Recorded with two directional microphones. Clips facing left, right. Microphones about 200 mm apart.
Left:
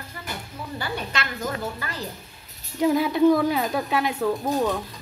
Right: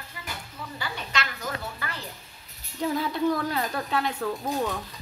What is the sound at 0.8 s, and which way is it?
Speech, 55° left (ahead or behind).